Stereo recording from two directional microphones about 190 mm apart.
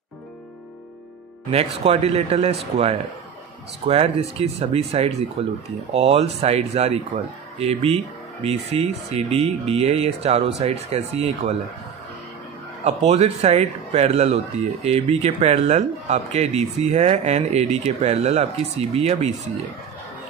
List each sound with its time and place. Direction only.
1.5 s speech: 30° right (ahead or behind)
12.8 s speech: 35° right (ahead or behind)